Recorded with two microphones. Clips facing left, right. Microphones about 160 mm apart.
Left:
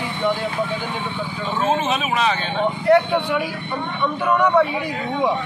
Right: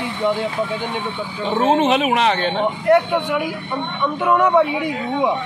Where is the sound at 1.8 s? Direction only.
65° right (ahead or behind).